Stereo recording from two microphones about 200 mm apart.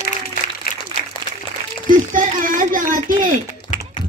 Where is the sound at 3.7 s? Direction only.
40° left (ahead or behind).